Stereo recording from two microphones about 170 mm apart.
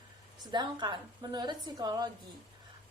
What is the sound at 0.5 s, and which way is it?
A woman's voice, 25° right (ahead or behind).